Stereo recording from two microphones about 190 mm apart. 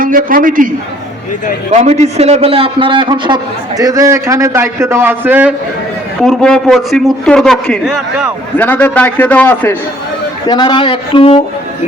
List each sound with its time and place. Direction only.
0.0 s a man's voice: 45° right (ahead or behind)
1.7 s a man's voice: 35° right (ahead or behind); by 5.5 s 10° right (ahead or behind)
6.2 s a man's voice: centre (ahead or behind)
10.4 s speech: 25° left (ahead or behind)